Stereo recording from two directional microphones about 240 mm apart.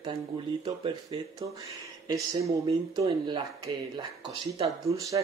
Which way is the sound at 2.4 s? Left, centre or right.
Right.